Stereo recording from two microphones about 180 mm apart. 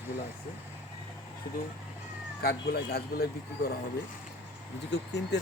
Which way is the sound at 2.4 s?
60° left (ahead or behind).